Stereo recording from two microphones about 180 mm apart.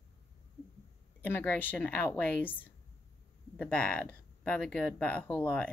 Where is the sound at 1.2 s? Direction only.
10° left (ahead or behind).